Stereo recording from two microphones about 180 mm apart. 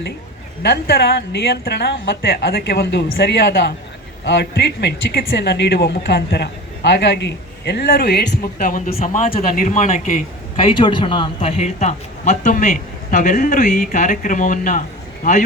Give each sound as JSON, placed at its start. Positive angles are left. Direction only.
{"t": 0.6, "sound": "a woman's voice", "side_deg": 60}
{"t": 8.9, "sound": "a man's voice", "side_deg": 40}
{"t": 10.6, "sound": "a man's voice", "side_deg": 30}